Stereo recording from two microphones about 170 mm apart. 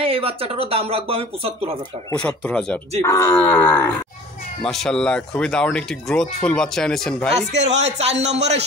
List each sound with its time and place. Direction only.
0.0 s speech: 35° right (ahead or behind)
2.1 s speech: 5° left (ahead or behind)
3.0 s speech: 20° left (ahead or behind)
7.5 s speech: 90° right
7.8 s speech: 40° right (ahead or behind)